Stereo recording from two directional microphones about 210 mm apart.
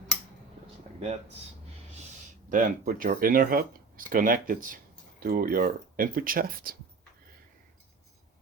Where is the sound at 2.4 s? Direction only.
40° right (ahead or behind).